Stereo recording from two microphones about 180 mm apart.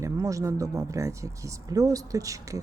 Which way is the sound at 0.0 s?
15° right (ahead or behind).